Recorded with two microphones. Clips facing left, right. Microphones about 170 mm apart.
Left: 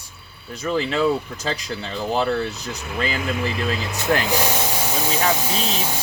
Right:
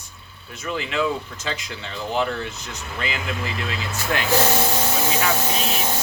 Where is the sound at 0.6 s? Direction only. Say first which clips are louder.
Left 4 dB; 35° left (ahead or behind).